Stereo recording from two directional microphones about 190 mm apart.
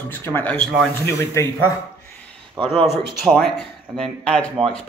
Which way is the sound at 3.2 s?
Centre (ahead or behind).